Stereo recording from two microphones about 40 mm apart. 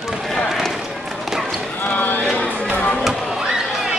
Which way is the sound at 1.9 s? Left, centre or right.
Left.